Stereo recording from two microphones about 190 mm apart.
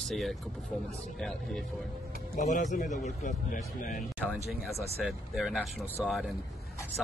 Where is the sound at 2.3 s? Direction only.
40° left (ahead or behind).